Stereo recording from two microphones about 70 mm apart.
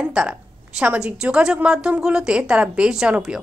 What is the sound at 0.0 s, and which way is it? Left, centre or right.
A woman's voice, centre.